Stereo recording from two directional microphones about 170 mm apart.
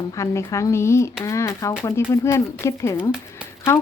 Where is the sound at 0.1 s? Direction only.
15° left (ahead or behind).